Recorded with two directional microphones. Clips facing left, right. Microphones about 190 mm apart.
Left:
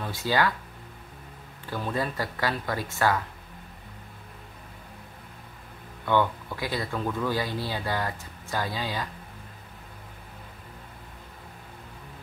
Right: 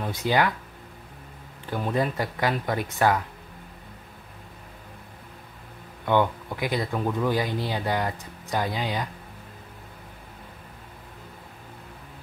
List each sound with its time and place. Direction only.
0.0 s speech: 20° right (ahead or behind)
1.7 s speech: 20° right (ahead or behind)
6.0 s speech: 20° right (ahead or behind)